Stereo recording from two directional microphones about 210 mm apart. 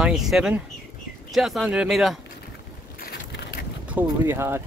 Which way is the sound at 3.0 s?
45° left (ahead or behind).